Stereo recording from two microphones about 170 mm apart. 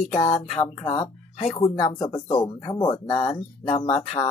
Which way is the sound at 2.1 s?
30° left (ahead or behind).